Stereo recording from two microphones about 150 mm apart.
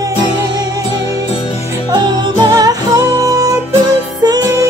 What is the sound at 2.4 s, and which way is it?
Music, 25° right (ahead or behind).